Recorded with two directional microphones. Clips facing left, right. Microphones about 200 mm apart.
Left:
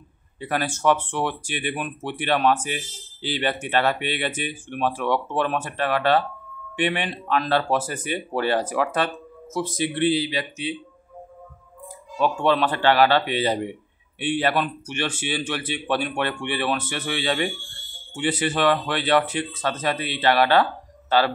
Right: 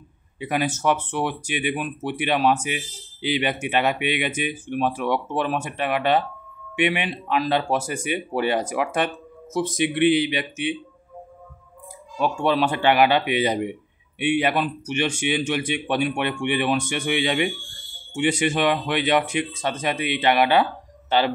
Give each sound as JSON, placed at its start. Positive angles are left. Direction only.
{"t": 0.4, "sound": "speech", "side_deg": -15}
{"t": 12.2, "sound": "speech", "side_deg": -10}
{"t": 18.5, "sound": "speech", "side_deg": -15}